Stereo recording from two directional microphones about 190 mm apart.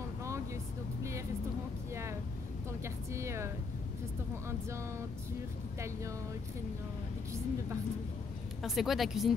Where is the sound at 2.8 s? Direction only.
15° right (ahead or behind).